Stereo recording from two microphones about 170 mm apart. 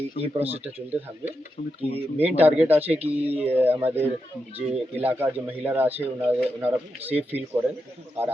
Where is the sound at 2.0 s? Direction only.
35° right (ahead or behind).